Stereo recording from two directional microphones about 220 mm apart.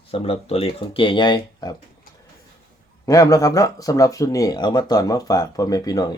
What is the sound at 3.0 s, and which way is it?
Speech, 15° left (ahead or behind).